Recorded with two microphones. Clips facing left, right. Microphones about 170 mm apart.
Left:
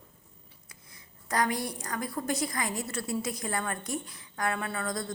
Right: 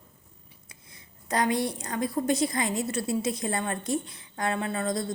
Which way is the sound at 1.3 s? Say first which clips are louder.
Right 4 dB; 25° right (ahead or behind).